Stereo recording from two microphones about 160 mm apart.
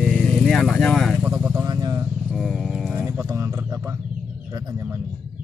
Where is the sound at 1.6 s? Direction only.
25° right (ahead or behind).